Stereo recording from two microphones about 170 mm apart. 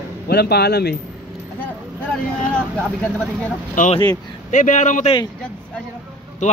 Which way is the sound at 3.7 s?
45° left (ahead or behind).